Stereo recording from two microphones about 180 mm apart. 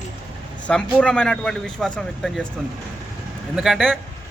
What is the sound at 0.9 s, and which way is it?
A man's voice, 5° left (ahead or behind).